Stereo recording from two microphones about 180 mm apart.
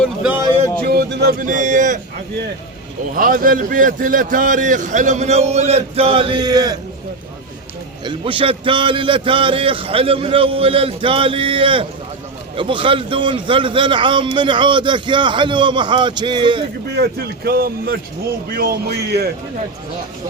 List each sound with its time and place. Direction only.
0.0 s a sound: 5° right (ahead or behind)
0.9 s a man's voice: 60° right (ahead or behind); by 2.0 s 45° right (ahead or behind)
3.2 s a man's voice: 50° right (ahead or behind); by 6.7 s 20° right (ahead or behind)
8.0 s a man's voice: 30° right (ahead or behind)
16.9 s speech: 60° right (ahead or behind)